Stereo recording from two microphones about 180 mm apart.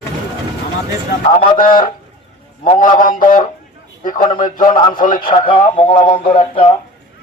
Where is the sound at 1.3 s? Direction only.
35° left (ahead or behind).